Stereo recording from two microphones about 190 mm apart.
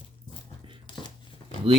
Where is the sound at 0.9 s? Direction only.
25° left (ahead or behind).